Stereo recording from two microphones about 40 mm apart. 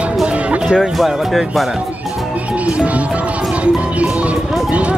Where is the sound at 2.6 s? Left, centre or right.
Right.